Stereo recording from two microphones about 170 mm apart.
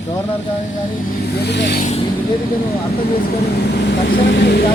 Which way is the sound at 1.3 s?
85° left.